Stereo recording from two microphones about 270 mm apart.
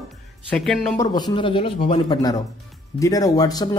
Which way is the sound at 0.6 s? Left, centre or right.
Centre.